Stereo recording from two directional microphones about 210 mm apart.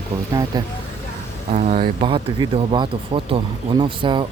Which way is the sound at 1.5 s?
35° right (ahead or behind).